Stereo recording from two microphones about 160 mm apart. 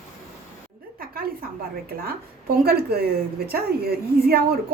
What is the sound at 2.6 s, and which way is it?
Speech, 75° right (ahead or behind).